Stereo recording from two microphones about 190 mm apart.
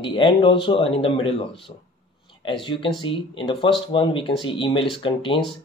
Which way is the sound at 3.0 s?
25° left (ahead or behind).